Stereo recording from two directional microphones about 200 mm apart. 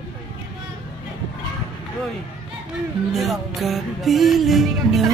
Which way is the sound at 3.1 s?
Centre (ahead or behind).